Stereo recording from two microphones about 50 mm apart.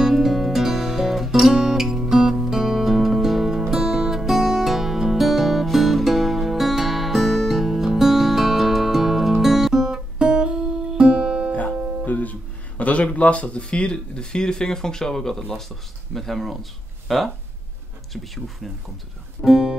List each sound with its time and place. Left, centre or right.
0.0 s music: centre
12.0 s speech: left; by 18.7 s centre
19.4 s speech: centre